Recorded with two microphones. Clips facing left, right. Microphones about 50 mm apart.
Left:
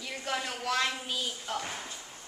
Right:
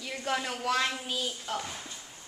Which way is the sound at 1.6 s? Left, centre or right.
Left.